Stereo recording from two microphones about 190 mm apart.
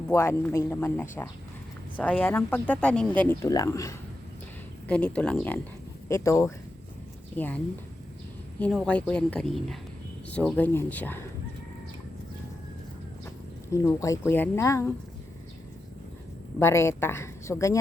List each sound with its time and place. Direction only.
0.1 s speech: 15° left (ahead or behind)
4.9 s a woman's voice: 5° left (ahead or behind)
13.2 s speech: 15° left (ahead or behind)
16.6 s speech: 15° left (ahead or behind)